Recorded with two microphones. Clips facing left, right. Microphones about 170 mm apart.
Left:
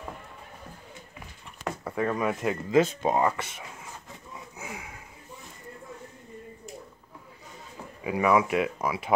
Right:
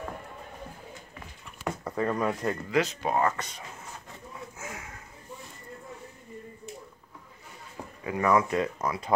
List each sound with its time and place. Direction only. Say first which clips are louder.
1.6 s speech: even; centre (ahead or behind)
2.7 s speech: left 5 dB; 25° left (ahead or behind)
3.3 s speech: left 1 dB; 5° left (ahead or behind)
4.6 s a sound: left 4 dB; 15° left (ahead or behind)
8.0 s speech: left 1 dB; 10° left (ahead or behind)